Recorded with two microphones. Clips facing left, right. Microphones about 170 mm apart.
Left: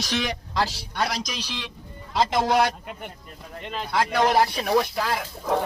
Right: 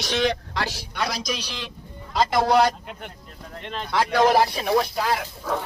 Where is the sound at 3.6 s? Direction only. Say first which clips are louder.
Even; 5° left (ahead or behind).